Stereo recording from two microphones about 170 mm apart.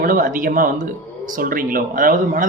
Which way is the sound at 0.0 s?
55° right (ahead or behind).